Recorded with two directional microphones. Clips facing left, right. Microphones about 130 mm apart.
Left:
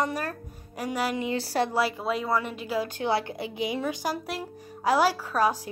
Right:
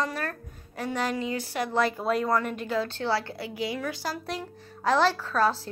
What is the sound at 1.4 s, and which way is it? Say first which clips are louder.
Speech: left 4 dB; 35° left (ahead or behind).